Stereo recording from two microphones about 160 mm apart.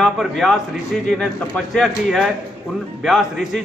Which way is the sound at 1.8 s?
Centre (ahead or behind).